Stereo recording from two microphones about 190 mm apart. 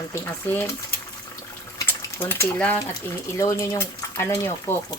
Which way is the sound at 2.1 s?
15° left (ahead or behind).